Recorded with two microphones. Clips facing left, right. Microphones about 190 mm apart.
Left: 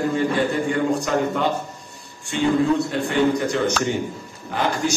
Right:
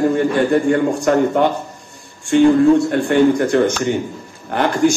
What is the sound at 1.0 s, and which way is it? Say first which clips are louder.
Speech: right 7 dB; 50° right (ahead or behind).